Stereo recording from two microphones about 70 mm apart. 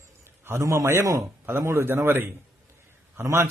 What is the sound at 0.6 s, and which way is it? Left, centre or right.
A man's voice, right.